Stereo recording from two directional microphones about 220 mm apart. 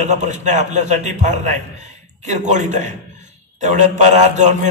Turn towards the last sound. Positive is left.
turn(degrees=-35)  # may be behind; listen again after turning